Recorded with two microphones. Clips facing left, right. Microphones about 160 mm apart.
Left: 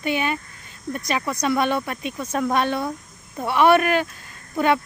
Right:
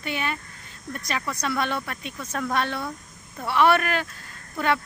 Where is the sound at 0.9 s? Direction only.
15° left (ahead or behind).